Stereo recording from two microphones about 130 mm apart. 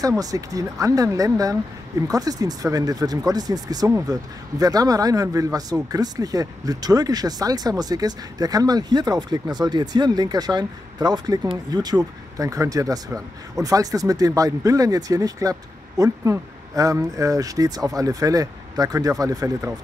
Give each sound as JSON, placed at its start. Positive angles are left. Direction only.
{"t": 0.2, "sound": "speech", "side_deg": -25}